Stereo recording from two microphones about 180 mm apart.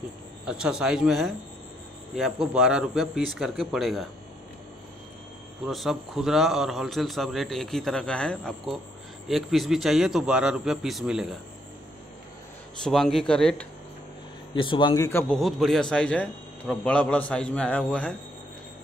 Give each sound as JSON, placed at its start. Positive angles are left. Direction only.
{"t": 0.5, "sound": "a man's voice", "side_deg": -5}
{"t": 5.7, "sound": "a man's voice", "side_deg": 0}
{"t": 12.8, "sound": "a man's voice", "side_deg": 0}
{"t": 14.5, "sound": "speech", "side_deg": 25}
{"t": 15.0, "sound": "a man's voice", "side_deg": 10}
{"t": 15.3, "sound": "a man's voice", "side_deg": 0}